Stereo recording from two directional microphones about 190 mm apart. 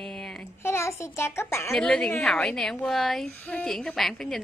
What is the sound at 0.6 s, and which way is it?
A child's voice, 15° left (ahead or behind).